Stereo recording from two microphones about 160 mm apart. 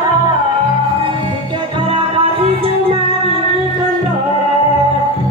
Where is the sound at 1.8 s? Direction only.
35° right (ahead or behind).